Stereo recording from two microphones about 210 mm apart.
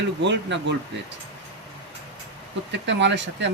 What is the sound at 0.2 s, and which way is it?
Speech, 55° right (ahead or behind).